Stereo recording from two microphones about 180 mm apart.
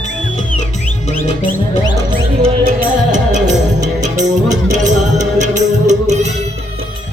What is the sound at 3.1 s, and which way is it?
Music, 40° right (ahead or behind).